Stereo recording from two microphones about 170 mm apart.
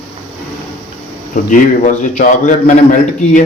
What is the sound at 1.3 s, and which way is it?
A man's voice, 45° left (ahead or behind).